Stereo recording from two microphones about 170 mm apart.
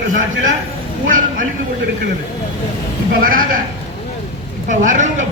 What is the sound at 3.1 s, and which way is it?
Speech, 55° right (ahead or behind).